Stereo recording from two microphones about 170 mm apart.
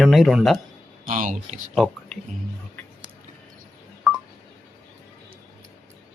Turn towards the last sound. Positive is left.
turn(degrees=0)  # may be behind; listen again after turning